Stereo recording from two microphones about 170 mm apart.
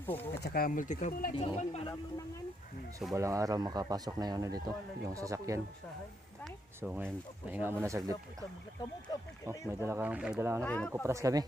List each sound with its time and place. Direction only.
0.0 s speech: 10° left (ahead or behind)
0.4 s speech: 60° left (ahead or behind)
1.4 s speech: 30° left (ahead or behind)
3.2 s speech: 20° right (ahead or behind)
6.4 s a sound: 5° right (ahead or behind)
7.5 s speech: 15° right (ahead or behind)
9.5 s speech: 15° right (ahead or behind)
10.6 s speech: 5° left (ahead or behind)
11.0 s speech: 20° right (ahead or behind)